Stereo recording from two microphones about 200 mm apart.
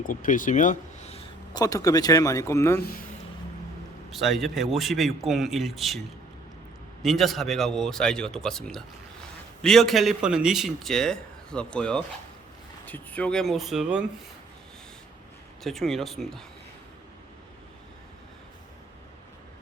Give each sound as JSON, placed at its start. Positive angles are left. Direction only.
{"t": 0.0, "sound": "speech", "side_deg": 40}
{"t": 1.5, "sound": "a man's voice", "side_deg": 15}
{"t": 4.1, "sound": "speech", "side_deg": 0}
{"t": 7.0, "sound": "speech", "side_deg": 0}
{"t": 15.6, "sound": "speech", "side_deg": 0}